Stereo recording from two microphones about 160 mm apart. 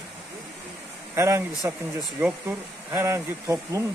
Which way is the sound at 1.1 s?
20° right (ahead or behind).